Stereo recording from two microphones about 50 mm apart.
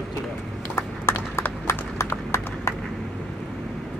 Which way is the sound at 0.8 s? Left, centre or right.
Left.